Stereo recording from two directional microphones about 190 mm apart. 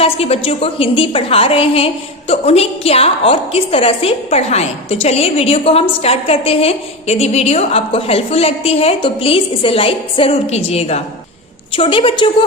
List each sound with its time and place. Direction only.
0.0 s a woman's voice: 30° left (ahead or behind)